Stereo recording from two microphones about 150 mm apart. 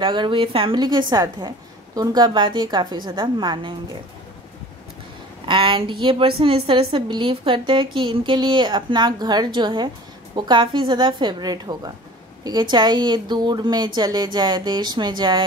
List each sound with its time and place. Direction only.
0.0 s a woman's voice: 35° right (ahead or behind)
5.4 s a woman's voice: 35° right (ahead or behind)